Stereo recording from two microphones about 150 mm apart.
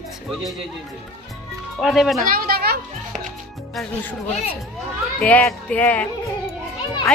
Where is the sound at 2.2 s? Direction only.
75° right (ahead or behind).